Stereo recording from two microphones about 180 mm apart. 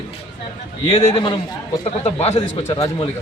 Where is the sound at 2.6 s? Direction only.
20° left (ahead or behind).